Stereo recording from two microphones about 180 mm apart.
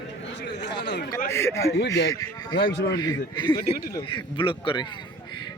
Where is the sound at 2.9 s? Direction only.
25° left (ahead or behind).